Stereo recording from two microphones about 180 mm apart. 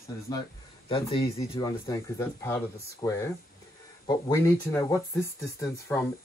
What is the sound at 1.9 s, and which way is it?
Speech, 15° left (ahead or behind).